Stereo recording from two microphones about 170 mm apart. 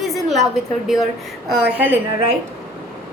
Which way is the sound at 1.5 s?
5° right (ahead or behind).